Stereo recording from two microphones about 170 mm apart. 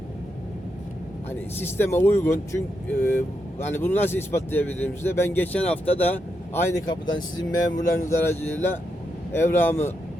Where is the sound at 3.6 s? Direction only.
10° left (ahead or behind).